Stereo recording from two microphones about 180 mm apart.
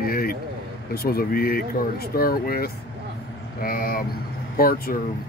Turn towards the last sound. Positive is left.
turn(degrees=55)  # may be behind; listen again after turning